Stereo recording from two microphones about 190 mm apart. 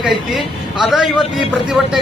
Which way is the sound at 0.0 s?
Centre (ahead or behind).